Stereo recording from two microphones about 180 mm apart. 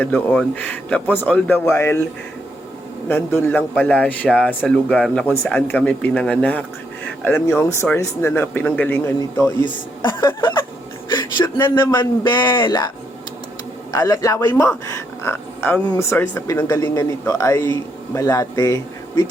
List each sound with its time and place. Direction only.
0.0 s speech: 10° left (ahead or behind)
3.1 s speech: 10° left (ahead or behind)
9.6 s a woman's voice: 25° left (ahead or behind)
11.1 s a sound: 25° left (ahead or behind)
11.7 s speech: 10° left (ahead or behind)
11.9 s a woman's voice: 25° left (ahead or behind)
13.9 s a woman's voice: 20° left (ahead or behind)